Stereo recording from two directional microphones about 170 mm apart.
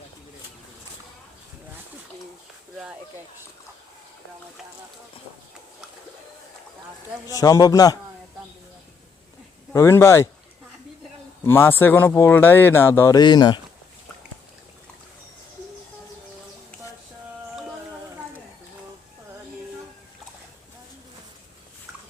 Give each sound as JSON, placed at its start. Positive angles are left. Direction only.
{"t": 7.3, "sound": "a man's voice", "side_deg": 20}
{"t": 9.7, "sound": "speech", "side_deg": 15}
{"t": 11.4, "sound": "speech", "side_deg": 15}